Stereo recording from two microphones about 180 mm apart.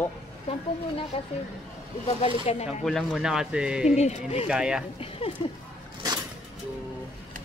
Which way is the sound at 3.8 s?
40° left (ahead or behind).